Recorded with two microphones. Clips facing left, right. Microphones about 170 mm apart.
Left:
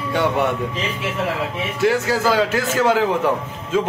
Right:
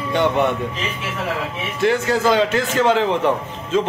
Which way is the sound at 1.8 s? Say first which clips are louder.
Right 1 dB; 5° left (ahead or behind).